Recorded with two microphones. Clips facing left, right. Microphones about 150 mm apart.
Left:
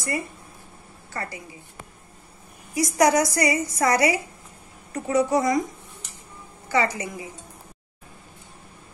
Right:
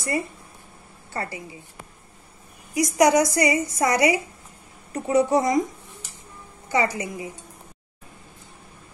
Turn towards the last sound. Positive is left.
turn(degrees=-25)  # may be behind; listen again after turning